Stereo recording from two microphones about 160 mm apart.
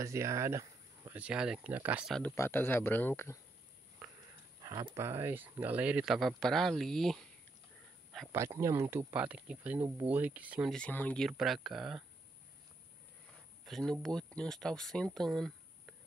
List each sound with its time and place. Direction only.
0.0 s speech: 20° right (ahead or behind)
1.2 s speech: 5° right (ahead or behind)
2.3 s speech: 15° left (ahead or behind)
4.6 s speech: 25° right (ahead or behind); by 7.2 s centre (ahead or behind)
8.3 s speech: 15° right (ahead or behind)
10.7 s speech: 10° left (ahead or behind)
13.7 s speech: centre (ahead or behind)